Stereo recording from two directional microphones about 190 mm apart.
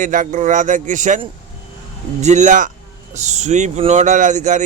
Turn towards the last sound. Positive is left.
turn(degrees=-40)  # may be behind; listen again after turning